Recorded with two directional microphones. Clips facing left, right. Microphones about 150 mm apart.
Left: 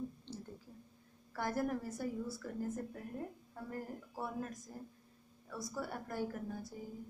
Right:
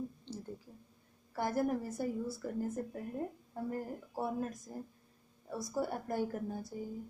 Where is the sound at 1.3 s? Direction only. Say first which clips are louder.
Right 4 dB; 20° right (ahead or behind).